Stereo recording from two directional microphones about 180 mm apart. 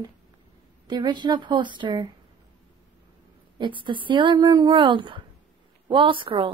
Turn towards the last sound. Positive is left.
turn(degrees=-30)  # may be behind; listen again after turning